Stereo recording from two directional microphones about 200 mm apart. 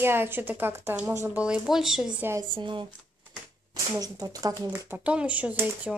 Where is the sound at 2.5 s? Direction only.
25° right (ahead or behind).